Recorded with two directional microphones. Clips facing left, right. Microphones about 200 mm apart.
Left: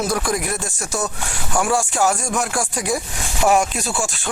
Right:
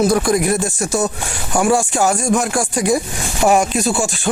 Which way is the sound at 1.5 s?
20° right (ahead or behind).